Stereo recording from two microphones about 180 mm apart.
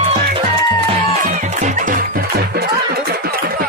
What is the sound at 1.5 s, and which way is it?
Music, 45° right (ahead or behind).